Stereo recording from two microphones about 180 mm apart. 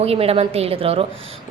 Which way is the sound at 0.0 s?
35° right (ahead or behind).